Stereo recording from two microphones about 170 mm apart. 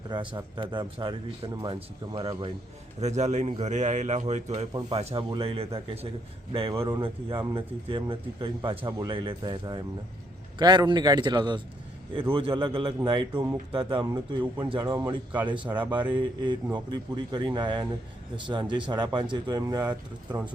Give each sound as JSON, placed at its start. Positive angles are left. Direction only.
{"t": 0.1, "sound": "speech", "side_deg": -25}
{"t": 3.0, "sound": "speech", "side_deg": -40}